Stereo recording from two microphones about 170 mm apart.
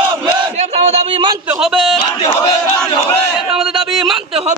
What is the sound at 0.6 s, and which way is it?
Battle cry, 40° right (ahead or behind).